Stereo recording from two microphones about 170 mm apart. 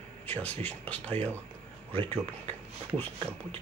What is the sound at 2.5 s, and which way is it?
Speech, 15° left (ahead or behind).